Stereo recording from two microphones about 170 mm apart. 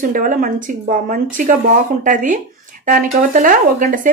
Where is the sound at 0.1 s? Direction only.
55° right (ahead or behind).